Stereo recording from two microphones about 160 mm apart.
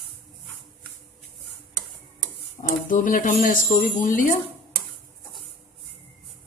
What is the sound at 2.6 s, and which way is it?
Speech, 55° left (ahead or behind).